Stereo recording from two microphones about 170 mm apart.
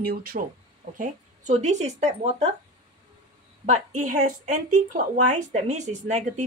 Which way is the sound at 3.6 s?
45° right (ahead or behind).